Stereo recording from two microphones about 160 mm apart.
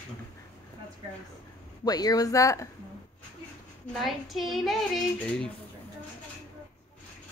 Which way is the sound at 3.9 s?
Centre (ahead or behind).